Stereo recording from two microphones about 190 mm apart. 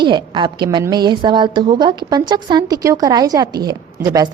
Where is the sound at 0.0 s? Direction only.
25° right (ahead or behind).